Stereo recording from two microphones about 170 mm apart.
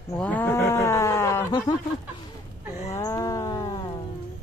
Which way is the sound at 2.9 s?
20° left (ahead or behind).